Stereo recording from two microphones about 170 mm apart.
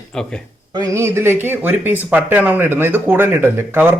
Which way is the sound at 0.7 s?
20° right (ahead or behind).